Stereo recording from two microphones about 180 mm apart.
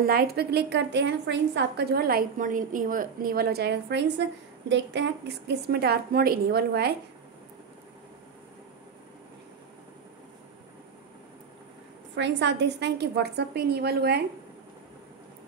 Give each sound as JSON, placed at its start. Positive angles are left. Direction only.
{"t": 0.0, "sound": "a woman's voice", "side_deg": -55}
{"t": 12.2, "sound": "a woman's voice", "side_deg": -80}